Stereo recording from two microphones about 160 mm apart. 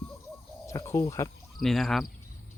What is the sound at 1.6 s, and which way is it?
Speech, centre (ahead or behind).